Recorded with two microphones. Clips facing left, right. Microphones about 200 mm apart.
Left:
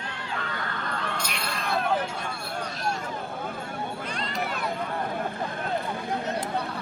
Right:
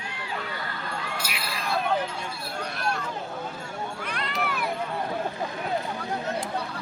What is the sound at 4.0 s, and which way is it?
Run, 60° right (ahead or behind).